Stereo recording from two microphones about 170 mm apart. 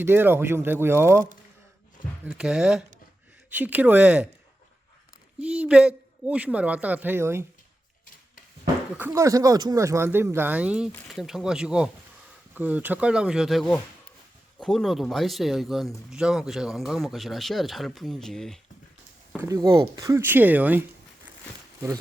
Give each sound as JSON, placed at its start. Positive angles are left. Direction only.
{"t": 0.0, "sound": "speech", "side_deg": -10}
{"t": 2.2, "sound": "speech", "side_deg": -5}
{"t": 5.4, "sound": "speech", "side_deg": -5}
{"t": 9.0, "sound": "speech", "side_deg": -15}
{"t": 19.4, "sound": "speech", "side_deg": -20}